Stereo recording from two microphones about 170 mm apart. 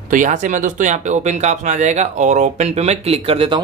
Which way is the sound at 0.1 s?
50° right (ahead or behind).